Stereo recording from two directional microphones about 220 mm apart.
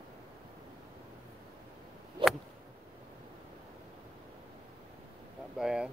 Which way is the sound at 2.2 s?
25° right (ahead or behind).